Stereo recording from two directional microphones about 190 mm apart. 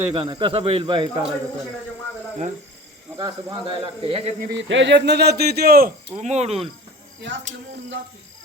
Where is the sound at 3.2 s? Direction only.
25° right (ahead or behind).